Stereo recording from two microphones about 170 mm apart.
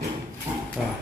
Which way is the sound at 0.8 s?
Centre (ahead or behind).